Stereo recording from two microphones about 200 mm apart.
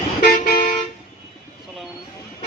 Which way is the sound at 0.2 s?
45° left (ahead or behind).